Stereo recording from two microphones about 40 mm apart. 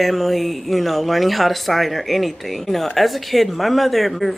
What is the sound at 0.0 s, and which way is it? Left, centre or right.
Speech, centre.